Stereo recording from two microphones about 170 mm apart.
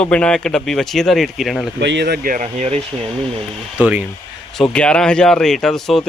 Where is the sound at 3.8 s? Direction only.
10° right (ahead or behind).